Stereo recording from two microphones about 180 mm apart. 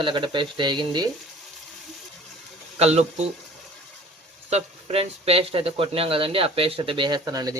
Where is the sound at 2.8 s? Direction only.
35° right (ahead or behind).